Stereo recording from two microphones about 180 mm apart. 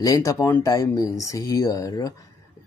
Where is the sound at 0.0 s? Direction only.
20° left (ahead or behind).